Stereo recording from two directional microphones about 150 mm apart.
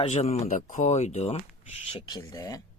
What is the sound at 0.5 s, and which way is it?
Speech, 60° left (ahead or behind).